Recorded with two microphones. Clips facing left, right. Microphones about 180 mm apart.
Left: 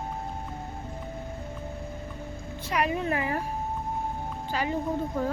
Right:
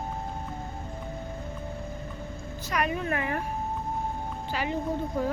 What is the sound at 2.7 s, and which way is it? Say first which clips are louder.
Speech: left 2 dB; 30° left (ahead or behind).